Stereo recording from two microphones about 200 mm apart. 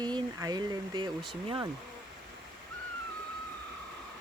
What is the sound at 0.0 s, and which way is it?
Speech, 20° right (ahead or behind).